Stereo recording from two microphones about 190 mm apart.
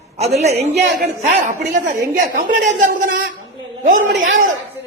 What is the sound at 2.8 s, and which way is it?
Speech, 45° right (ahead or behind).